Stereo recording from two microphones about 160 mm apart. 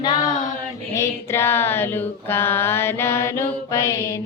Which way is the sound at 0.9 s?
15° left (ahead or behind).